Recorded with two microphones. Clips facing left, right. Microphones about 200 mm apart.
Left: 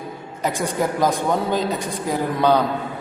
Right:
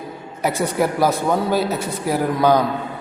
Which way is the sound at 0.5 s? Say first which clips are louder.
Right 2 dB; 10° left (ahead or behind).